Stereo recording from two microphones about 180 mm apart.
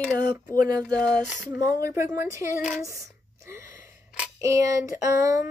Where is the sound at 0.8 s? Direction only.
5° left (ahead or behind).